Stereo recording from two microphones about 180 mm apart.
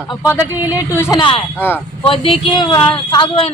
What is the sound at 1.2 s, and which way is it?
Speech, 30° left (ahead or behind).